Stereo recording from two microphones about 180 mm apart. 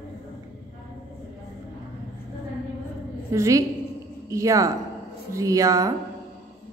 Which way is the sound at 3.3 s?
15° right (ahead or behind).